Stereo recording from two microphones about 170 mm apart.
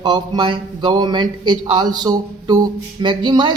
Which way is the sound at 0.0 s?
30° right (ahead or behind).